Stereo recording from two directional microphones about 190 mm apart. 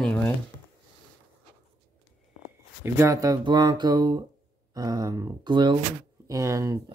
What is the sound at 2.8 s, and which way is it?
Speech, 15° right (ahead or behind).